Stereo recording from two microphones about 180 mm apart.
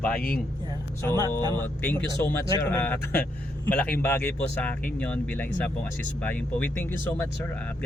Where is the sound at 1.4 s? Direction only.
25° right (ahead or behind).